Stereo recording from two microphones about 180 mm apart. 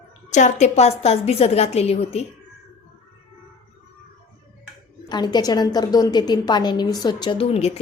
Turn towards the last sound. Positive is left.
turn(degrees=35)  # may be behind; listen again after turning